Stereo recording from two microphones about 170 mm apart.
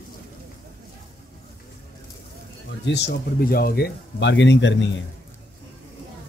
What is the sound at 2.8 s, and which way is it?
Speech, 80° left.